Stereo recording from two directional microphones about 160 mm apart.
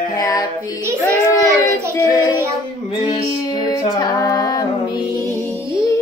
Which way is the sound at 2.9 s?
25° left (ahead or behind).